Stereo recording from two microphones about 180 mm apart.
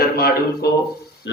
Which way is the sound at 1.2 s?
90° left.